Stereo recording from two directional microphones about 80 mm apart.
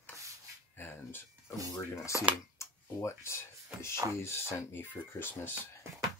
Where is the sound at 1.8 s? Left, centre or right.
Left.